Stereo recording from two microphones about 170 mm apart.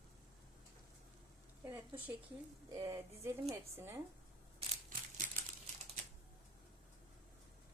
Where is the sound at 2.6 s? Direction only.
20° right (ahead or behind).